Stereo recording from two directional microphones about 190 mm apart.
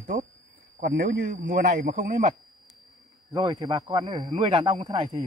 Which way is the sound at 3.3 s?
20° right (ahead or behind).